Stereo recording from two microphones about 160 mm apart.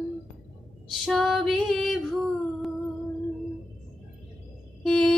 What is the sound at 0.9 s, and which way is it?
Female singing, centre (ahead or behind).